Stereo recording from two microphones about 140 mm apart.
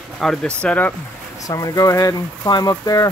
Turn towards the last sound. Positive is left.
turn(degrees=25)  # may be behind; listen again after turning